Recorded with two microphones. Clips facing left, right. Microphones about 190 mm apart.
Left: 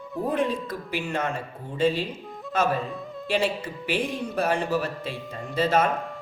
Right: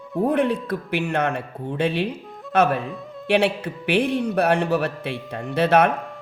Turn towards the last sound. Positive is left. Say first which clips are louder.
# right 5 dB
turn(degrees=-70)  # may be behind; listen again after turning